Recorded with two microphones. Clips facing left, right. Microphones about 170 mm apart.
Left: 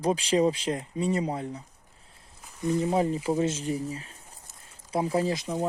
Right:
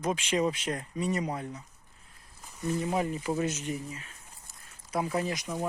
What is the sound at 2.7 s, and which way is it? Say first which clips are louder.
Speech: left 5 dB; 30° left (ahead or behind).